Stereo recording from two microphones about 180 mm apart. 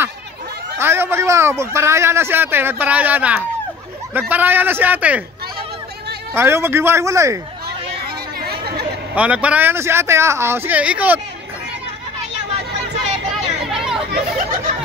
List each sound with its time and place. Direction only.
0.7 s speech: 15° right (ahead or behind)
6.3 s speech: 15° right (ahead or behind)
8.4 s chatter: 60° right (ahead or behind)
9.1 s speech: 10° right (ahead or behind)
13.7 s chatter: 5° right (ahead or behind)